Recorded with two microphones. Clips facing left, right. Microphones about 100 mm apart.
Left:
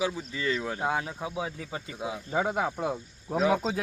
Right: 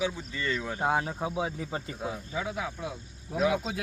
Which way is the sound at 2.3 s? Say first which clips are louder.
Left 10 dB; 50° left (ahead or behind).